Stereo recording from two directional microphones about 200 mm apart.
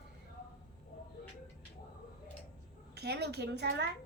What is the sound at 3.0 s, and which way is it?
Speech, 55° right (ahead or behind).